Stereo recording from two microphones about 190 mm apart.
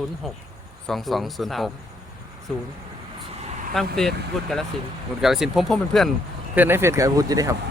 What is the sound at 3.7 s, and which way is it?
Speech, centre (ahead or behind).